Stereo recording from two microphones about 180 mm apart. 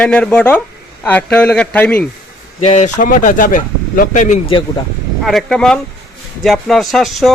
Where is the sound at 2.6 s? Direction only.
40° left (ahead or behind).